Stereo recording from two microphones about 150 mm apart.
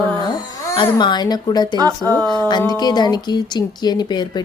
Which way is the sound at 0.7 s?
30° left (ahead or behind).